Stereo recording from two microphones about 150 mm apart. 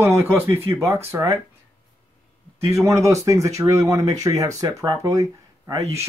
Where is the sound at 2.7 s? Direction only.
20° right (ahead or behind).